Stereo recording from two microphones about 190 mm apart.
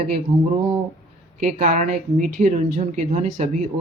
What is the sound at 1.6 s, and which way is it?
Speech, 40° right (ahead or behind).